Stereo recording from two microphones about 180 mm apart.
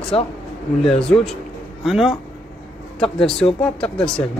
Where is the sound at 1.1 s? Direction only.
10° left (ahead or behind).